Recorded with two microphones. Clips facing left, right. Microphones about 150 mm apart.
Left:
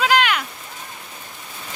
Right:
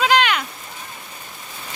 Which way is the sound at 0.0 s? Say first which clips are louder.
Right 1 dB; 5° left (ahead or behind).